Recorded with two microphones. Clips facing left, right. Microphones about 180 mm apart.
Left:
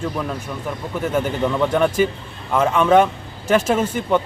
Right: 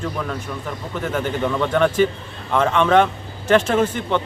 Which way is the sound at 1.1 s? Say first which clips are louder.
Left 1 dB; 5° left (ahead or behind).